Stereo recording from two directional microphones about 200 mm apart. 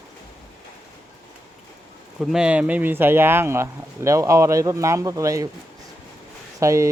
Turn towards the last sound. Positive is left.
turn(degrees=-15)  # may be behind; listen again after turning